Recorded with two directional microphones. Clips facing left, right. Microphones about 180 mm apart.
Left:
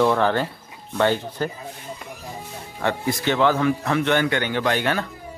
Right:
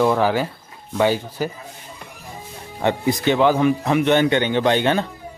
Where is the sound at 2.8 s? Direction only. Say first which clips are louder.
Right 4 dB; 20° right (ahead or behind).